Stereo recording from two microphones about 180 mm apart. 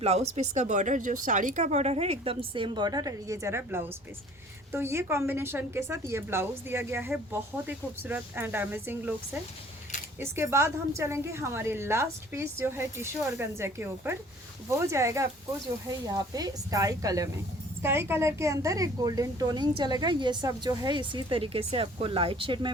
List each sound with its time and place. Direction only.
0.0 s a woman's voice: 35° right (ahead or behind); by 9.1 s 10° right (ahead or behind)
10.2 s a woman's voice: 15° right (ahead or behind)